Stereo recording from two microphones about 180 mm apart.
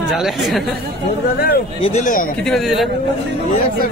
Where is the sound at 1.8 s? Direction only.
40° left (ahead or behind).